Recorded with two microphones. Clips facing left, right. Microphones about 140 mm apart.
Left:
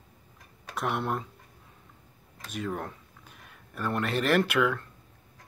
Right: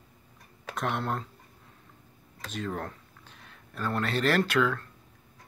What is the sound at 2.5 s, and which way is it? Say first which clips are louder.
Speech: left 1 dB; 10° left (ahead or behind).